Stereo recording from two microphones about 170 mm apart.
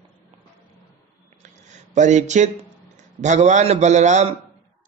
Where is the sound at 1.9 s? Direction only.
45° right (ahead or behind).